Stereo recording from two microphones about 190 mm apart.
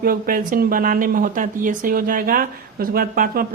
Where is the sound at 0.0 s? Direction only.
50° right (ahead or behind).